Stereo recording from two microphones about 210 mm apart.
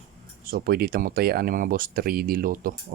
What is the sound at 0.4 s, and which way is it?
Speech, 45° right (ahead or behind).